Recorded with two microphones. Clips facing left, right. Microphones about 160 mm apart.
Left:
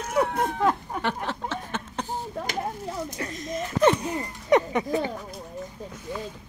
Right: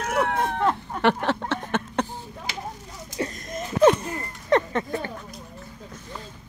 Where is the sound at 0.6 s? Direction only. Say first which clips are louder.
Even; 5° left (ahead or behind).